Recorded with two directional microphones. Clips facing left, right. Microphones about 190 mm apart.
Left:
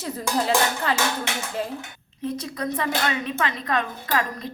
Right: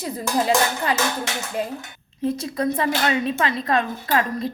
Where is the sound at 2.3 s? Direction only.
25° right (ahead or behind).